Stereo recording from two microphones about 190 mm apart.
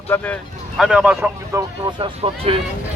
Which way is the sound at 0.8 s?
5° right (ahead or behind).